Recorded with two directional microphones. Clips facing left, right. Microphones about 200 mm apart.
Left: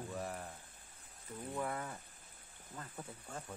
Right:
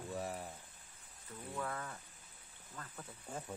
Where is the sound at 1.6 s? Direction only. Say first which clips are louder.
Left 2 dB; 20° left (ahead or behind).